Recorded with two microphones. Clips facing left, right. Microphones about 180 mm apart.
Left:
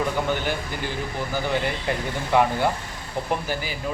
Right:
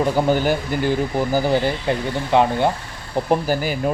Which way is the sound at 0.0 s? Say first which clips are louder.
Right 7 dB; 35° right (ahead or behind).